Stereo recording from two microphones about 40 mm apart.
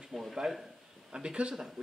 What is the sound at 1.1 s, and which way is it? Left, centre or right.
Speech, right.